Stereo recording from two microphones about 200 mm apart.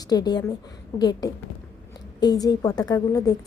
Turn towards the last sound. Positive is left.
turn(degrees=15)  # may be behind; listen again after turning